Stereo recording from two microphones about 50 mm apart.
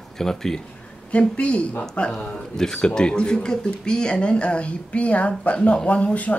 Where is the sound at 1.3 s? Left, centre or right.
Left.